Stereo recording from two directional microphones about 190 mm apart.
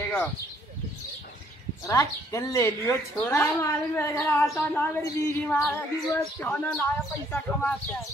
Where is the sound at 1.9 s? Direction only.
15° left (ahead or behind).